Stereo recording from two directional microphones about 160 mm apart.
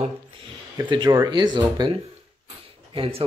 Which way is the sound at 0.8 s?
30° right (ahead or behind).